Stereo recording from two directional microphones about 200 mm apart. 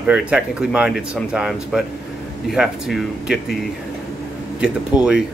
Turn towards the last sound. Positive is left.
turn(degrees=-5)  # may be behind; listen again after turning